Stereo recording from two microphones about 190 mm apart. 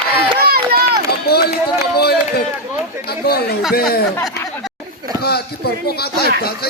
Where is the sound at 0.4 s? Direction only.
55° right (ahead or behind).